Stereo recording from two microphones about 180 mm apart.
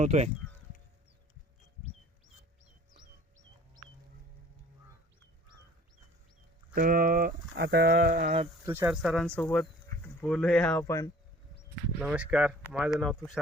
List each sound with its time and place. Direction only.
0.0 s speech: 40° right (ahead or behind)
6.7 s speech: 50° right (ahead or behind)
7.5 s speech: 70° right (ahead or behind)
8.6 s speech: 10° right (ahead or behind); by 11.1 s 15° left (ahead or behind)
11.9 s speech: 5° right (ahead or behind)